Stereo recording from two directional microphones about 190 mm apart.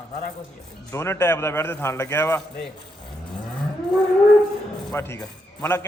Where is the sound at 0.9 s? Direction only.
15° left (ahead or behind).